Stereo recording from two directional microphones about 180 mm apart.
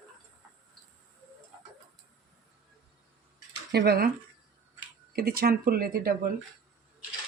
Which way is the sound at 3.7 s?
60° right (ahead or behind).